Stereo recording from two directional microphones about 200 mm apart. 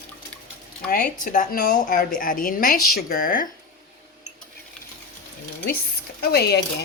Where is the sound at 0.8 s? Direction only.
45° left (ahead or behind).